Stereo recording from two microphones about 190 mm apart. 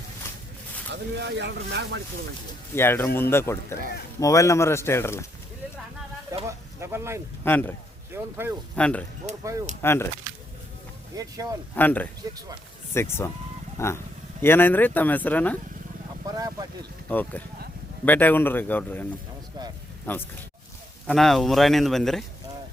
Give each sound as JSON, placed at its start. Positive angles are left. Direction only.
{"t": 0.9, "sound": "speech", "side_deg": -65}
{"t": 2.7, "sound": "speech", "side_deg": 10}
{"t": 6.3, "sound": "speech", "side_deg": -15}
{"t": 7.4, "sound": "speech", "side_deg": 10}
{"t": 8.1, "sound": "speech", "side_deg": -10}
{"t": 8.7, "sound": "speech", "side_deg": 5}
{"t": 11.1, "sound": "speech", "side_deg": -20}
{"t": 11.7, "sound": "speech", "side_deg": 10}
{"t": 12.2, "sound": "speech", "side_deg": -20}
{"t": 12.9, "sound": "speech", "side_deg": 15}
{"t": 16.2, "sound": "speech", "side_deg": -20}
{"t": 17.1, "sound": "speech", "side_deg": 10}
{"t": 20.1, "sound": "speech", "side_deg": 10}